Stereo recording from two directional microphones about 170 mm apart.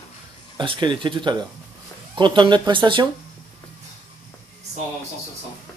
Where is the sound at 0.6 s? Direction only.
30° right (ahead or behind).